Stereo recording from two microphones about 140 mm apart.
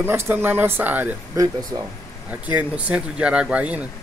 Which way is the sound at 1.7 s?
30° right (ahead or behind).